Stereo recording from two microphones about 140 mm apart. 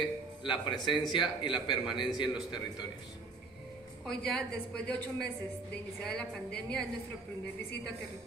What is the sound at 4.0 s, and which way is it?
Speech, 5° left (ahead or behind).